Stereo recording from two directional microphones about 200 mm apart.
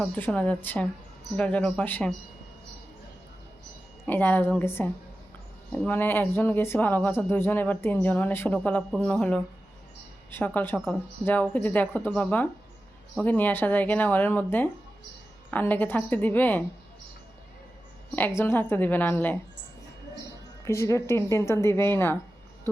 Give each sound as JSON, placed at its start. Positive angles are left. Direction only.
{"t": 0.0, "sound": "speech", "side_deg": 5}
{"t": 4.0, "sound": "speech", "side_deg": 10}
{"t": 18.1, "sound": "speech", "side_deg": 10}
{"t": 20.7, "sound": "speech", "side_deg": 15}